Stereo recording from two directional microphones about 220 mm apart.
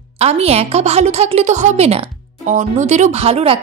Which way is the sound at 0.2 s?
30° right (ahead or behind).